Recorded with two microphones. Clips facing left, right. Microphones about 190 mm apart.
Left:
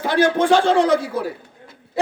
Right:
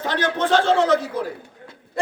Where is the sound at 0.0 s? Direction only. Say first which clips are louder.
Left 6 dB; 10° left (ahead or behind).